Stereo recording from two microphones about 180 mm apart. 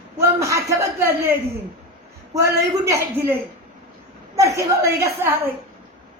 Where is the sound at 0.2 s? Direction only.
15° right (ahead or behind).